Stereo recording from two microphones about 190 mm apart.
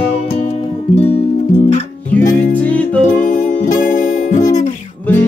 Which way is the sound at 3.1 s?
45° left (ahead or behind).